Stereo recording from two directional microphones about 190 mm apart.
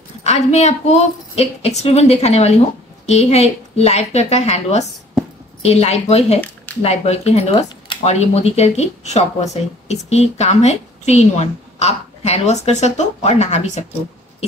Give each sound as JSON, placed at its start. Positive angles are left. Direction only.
{"t": 0.2, "sound": "speech", "side_deg": 35}